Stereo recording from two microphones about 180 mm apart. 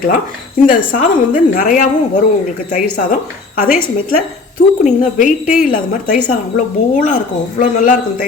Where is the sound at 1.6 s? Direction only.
45° left (ahead or behind).